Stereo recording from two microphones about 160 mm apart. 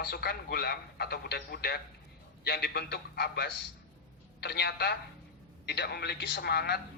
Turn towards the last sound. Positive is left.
turn(degrees=90)